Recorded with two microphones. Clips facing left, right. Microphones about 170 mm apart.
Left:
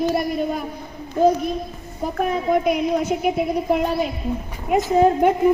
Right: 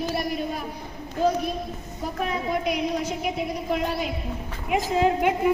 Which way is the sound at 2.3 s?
50° left (ahead or behind).